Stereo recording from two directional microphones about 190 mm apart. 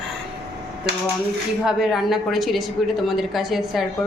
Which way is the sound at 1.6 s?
Centre (ahead or behind).